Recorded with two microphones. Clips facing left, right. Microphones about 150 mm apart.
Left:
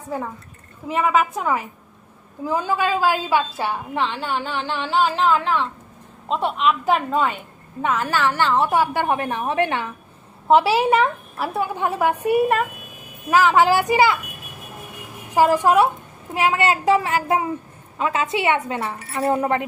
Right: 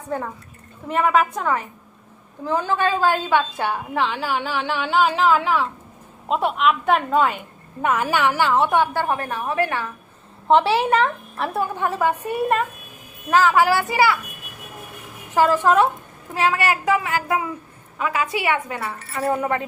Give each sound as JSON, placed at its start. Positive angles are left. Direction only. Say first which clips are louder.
{"t": 0.1, "sound": "a woman's voice", "louder": "right 1 dB", "side_deg": 5}
{"t": 8.9, "sound": "a woman's voice", "louder": "left 2 dB", "side_deg": 20}
{"t": 10.5, "sound": "a woman's voice", "louder": "left 1 dB", "side_deg": 5}
{"t": 13.3, "sound": "a woman's voice", "louder": "left 1 dB", "side_deg": 20}
{"t": 15.4, "sound": "a woman's voice", "louder": "left 1 dB", "side_deg": 15}